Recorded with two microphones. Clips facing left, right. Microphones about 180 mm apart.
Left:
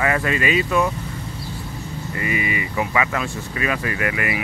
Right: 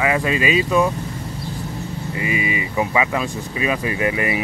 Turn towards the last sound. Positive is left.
turn(degrees=-25)  # may be behind; listen again after turning